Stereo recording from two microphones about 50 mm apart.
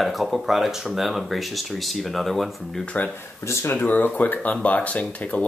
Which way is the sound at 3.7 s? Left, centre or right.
Left.